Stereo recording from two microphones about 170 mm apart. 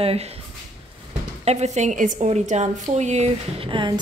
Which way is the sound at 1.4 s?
40° right (ahead or behind).